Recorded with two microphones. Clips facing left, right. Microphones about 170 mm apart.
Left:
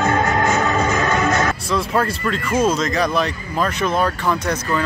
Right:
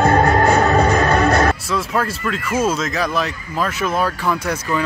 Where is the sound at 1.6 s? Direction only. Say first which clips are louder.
Left 1 dB; centre (ahead or behind).